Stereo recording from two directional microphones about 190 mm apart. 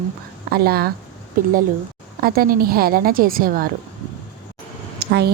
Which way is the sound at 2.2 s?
50° right (ahead or behind).